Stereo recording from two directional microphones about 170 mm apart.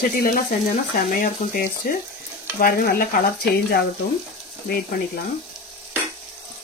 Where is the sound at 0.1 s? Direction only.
55° left (ahead or behind).